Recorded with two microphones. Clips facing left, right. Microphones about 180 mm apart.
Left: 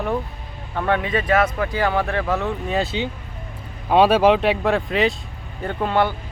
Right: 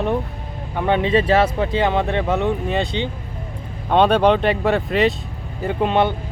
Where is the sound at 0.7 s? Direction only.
20° right (ahead or behind).